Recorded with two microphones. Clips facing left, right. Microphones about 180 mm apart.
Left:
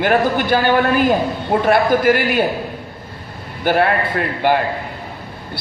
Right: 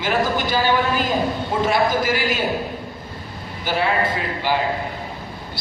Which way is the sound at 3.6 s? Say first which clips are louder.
Left 5 dB; 55° left (ahead or behind).